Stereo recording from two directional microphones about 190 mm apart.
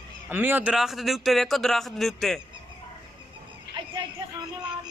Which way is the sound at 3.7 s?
60° right (ahead or behind).